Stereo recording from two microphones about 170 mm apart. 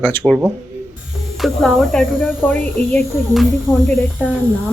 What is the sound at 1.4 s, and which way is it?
Speech, centre (ahead or behind).